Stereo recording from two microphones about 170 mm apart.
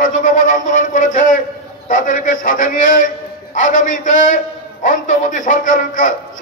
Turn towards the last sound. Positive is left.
turn(degrees=50)  # may be behind; listen again after turning